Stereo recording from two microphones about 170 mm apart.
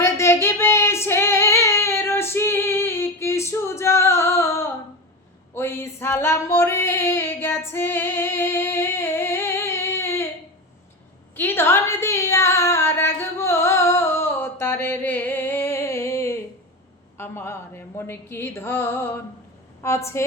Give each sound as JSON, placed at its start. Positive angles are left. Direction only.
{"t": 0.0, "sound": "female singing", "side_deg": 15}
{"t": 11.3, "sound": "female singing", "side_deg": 15}
{"t": 17.2, "sound": "a sound", "side_deg": 15}
{"t": 19.8, "sound": "a woman's voice", "side_deg": 15}